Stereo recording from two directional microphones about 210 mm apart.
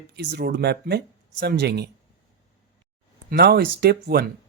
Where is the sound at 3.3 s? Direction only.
50° right (ahead or behind).